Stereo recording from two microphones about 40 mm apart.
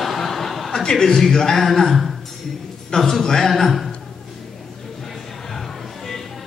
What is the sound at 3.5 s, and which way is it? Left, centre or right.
Speech, centre.